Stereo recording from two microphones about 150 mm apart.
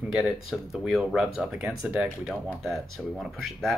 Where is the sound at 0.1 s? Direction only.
Centre (ahead or behind).